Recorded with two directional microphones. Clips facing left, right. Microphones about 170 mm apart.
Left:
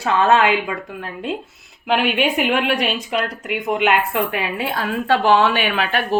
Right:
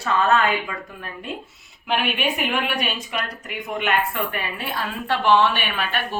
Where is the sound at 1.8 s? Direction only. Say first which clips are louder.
Left 5 dB; 90° left.